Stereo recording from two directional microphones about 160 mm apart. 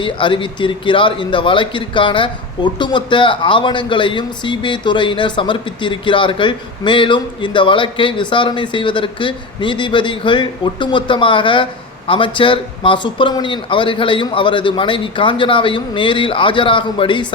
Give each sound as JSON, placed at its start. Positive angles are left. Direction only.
{"t": 0.0, "sound": "a man's voice", "side_deg": 30}